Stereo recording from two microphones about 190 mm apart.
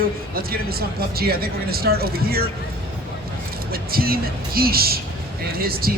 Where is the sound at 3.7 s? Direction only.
50° right (ahead or behind).